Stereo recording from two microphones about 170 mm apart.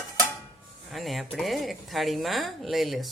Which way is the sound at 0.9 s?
Centre (ahead or behind).